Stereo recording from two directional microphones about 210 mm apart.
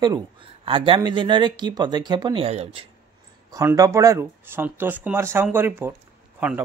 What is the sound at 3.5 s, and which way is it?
Speech, 15° right (ahead or behind).